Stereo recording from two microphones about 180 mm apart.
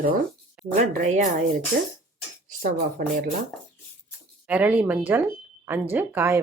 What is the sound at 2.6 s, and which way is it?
Speech, 50° right (ahead or behind).